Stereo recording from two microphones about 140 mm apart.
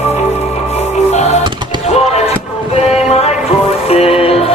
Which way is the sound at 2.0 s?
50° left (ahead or behind).